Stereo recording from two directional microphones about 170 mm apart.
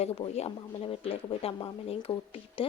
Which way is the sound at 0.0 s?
40° left (ahead or behind).